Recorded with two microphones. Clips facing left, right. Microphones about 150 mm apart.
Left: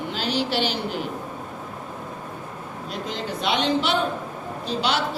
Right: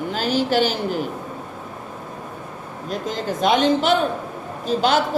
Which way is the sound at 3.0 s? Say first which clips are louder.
Right 6 dB; 45° right (ahead or behind).